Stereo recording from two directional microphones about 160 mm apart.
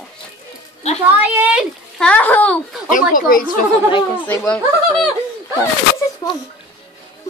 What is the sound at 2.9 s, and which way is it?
Speech, 55° left (ahead or behind).